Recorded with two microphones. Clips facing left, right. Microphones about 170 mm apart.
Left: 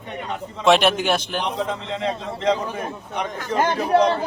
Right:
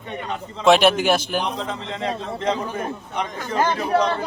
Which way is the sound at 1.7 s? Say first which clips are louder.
Left 1 dB; 20° left (ahead or behind).